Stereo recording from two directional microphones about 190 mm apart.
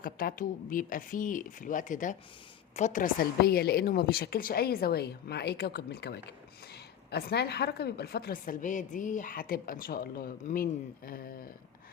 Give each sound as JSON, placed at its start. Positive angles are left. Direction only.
{"t": 0.0, "sound": "a woman's voice", "side_deg": 50}